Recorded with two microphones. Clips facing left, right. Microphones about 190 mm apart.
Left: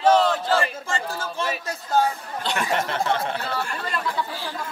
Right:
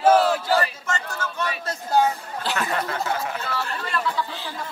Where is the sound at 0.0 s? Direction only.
10° right (ahead or behind).